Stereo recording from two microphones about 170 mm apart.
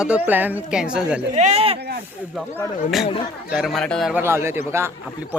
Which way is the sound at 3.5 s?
Centre (ahead or behind).